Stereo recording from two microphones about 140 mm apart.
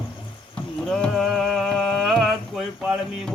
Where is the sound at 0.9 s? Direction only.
Centre (ahead or behind).